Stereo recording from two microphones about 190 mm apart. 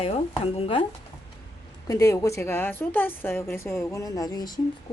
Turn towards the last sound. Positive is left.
turn(degrees=20)  # may be behind; listen again after turning